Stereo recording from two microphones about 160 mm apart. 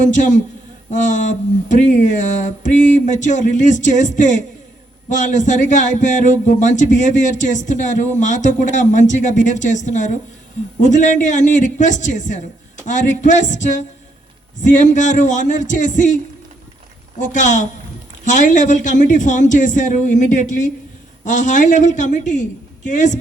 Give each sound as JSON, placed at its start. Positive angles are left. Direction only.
{"t": 0.0, "sound": "speech", "side_deg": 50}
{"t": 17.2, "sound": "speech", "side_deg": 50}